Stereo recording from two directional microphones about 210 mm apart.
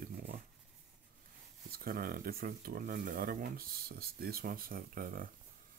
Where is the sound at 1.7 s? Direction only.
45° right (ahead or behind).